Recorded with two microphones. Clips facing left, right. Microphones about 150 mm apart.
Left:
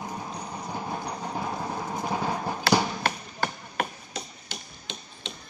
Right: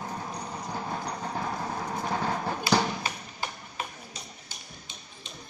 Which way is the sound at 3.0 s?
75° left (ahead or behind).